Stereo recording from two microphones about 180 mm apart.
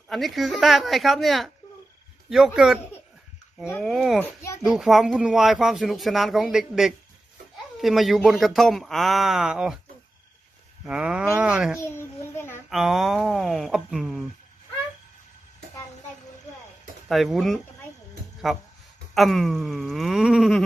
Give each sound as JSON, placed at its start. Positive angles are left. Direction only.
{"t": 0.1, "sound": "speech", "side_deg": 0}
{"t": 3.6, "sound": "a child's voice", "side_deg": 10}
{"t": 3.9, "sound": "speech", "side_deg": 0}
{"t": 4.2, "sound": "a child's voice", "side_deg": 15}
{"t": 4.6, "sound": "speech", "side_deg": 0}
{"t": 10.9, "sound": "speech", "side_deg": -5}
{"t": 11.8, "sound": "a sound", "side_deg": 15}
{"t": 12.6, "sound": "speech", "side_deg": 0}
{"t": 17.1, "sound": "speech", "side_deg": 0}